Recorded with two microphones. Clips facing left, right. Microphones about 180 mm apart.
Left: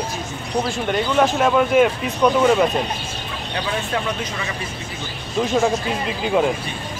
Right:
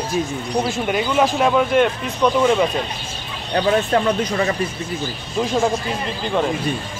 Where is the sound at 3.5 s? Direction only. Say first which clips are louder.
Right 8 dB; 40° right (ahead or behind).